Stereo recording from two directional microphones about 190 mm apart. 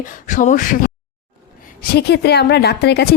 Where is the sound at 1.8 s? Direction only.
60° left (ahead or behind).